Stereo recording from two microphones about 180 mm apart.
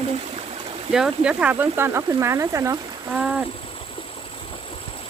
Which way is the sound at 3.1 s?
5° right (ahead or behind).